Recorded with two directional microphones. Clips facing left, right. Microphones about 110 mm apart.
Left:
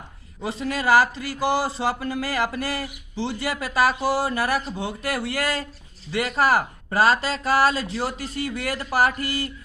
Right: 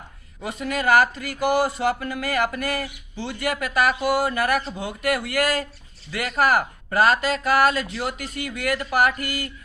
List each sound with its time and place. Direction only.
0.4 s speech: 30° left (ahead or behind)